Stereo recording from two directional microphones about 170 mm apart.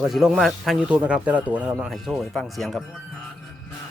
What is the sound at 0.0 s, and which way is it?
A man's voice, centre (ahead or behind).